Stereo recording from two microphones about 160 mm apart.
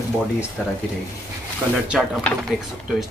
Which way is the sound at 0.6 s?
Centre (ahead or behind).